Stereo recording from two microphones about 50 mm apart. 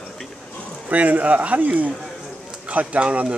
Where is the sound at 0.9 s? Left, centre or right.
Right.